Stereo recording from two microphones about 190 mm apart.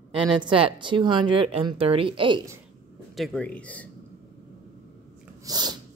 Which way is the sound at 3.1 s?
Centre (ahead or behind).